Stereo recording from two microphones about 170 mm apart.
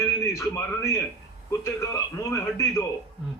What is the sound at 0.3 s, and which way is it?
A man's voice, 15° left (ahead or behind).